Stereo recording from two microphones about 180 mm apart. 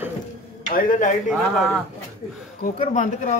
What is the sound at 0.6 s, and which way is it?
Speech, 50° left (ahead or behind).